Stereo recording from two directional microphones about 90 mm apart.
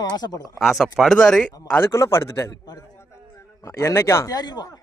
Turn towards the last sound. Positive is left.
turn(degrees=50)  # may be behind; listen again after turning